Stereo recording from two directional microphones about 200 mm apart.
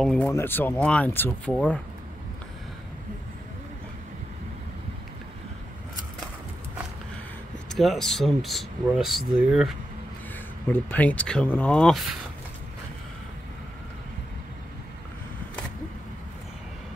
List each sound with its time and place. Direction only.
0.0 s speech: 5° left (ahead or behind)
7.7 s speech: centre (ahead or behind)
10.7 s speech: 10° left (ahead or behind)